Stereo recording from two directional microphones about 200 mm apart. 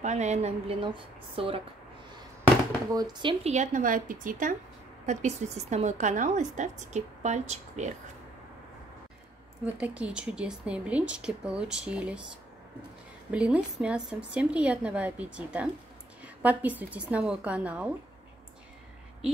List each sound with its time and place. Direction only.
0.0 s speech: 35° right (ahead or behind)
2.9 s speech: 20° right (ahead or behind)
3.5 s a woman's voice: 35° right (ahead or behind)
9.7 s a woman's voice: 5° right (ahead or behind)
13.3 s a woman's voice: 5° right (ahead or behind)